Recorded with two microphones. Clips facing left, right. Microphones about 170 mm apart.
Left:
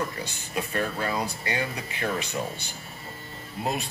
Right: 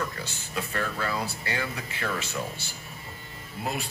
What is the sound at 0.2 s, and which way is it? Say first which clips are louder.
Speech: left 2 dB; 20° left (ahead or behind).